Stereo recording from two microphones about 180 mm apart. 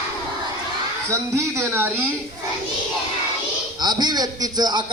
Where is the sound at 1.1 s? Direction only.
15° right (ahead or behind).